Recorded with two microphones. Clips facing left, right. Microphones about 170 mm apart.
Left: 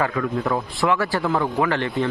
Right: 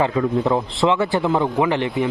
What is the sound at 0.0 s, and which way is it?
A man's voice, 20° right (ahead or behind).